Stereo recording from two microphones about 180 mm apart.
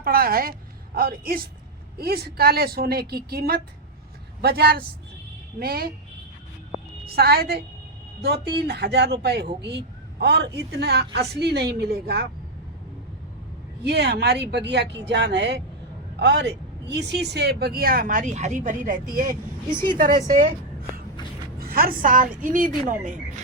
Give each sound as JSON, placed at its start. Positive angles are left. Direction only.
{"t": 0.0, "sound": "a woman's voice", "side_deg": -55}
{"t": 7.2, "sound": "speech", "side_deg": -60}
{"t": 13.8, "sound": "speech", "side_deg": -70}
{"t": 21.6, "sound": "a woman's voice", "side_deg": -55}